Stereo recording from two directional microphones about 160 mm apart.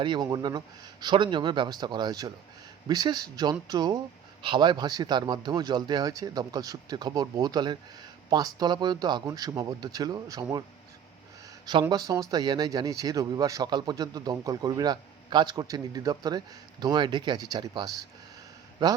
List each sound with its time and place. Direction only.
0.0 s speech: 25° right (ahead or behind)
11.6 s speech: 25° right (ahead or behind)